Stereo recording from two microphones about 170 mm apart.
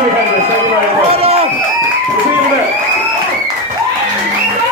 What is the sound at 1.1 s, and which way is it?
Run, 35° right (ahead or behind).